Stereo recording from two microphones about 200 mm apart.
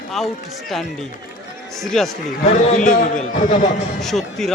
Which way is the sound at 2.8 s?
40° left (ahead or behind).